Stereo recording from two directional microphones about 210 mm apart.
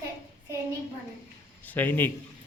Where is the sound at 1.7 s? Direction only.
10° left (ahead or behind).